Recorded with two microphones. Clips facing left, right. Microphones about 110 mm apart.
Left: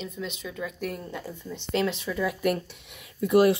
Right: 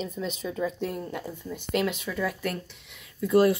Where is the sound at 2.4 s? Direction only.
20° left (ahead or behind).